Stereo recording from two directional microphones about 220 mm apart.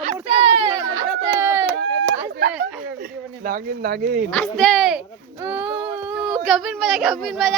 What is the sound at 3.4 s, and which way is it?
Speech, 40° right (ahead or behind).